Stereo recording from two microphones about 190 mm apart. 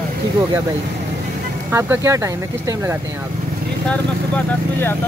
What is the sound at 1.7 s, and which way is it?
Speech, 10° right (ahead or behind).